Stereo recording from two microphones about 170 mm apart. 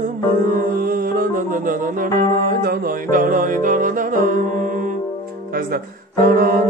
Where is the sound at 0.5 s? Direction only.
60° right (ahead or behind).